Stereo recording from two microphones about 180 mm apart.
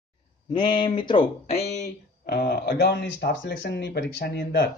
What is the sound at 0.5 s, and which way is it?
Speech, 25° left (ahead or behind).